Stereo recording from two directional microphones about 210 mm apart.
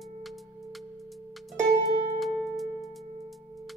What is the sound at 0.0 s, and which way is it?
Music, centre (ahead or behind).